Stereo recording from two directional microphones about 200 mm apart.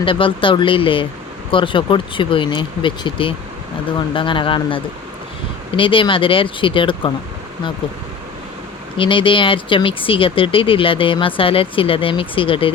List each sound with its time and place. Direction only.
0.0 s speech: 25° left (ahead or behind)
9.0 s speech: 25° left (ahead or behind)